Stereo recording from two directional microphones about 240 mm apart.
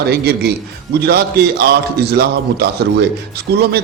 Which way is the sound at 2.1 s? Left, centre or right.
Right.